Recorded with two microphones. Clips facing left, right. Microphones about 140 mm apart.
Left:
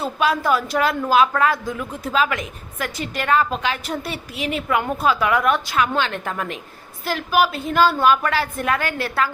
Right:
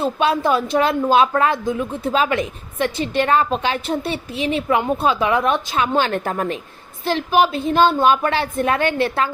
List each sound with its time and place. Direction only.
0.0 s a woman's voice: 25° right (ahead or behind)
7.0 s a woman's voice: 25° right (ahead or behind)